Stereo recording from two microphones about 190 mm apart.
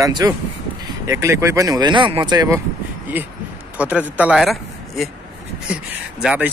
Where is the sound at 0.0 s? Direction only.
20° right (ahead or behind).